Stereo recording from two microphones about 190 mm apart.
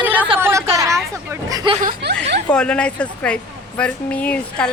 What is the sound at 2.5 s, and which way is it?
Speech, 5° left (ahead or behind).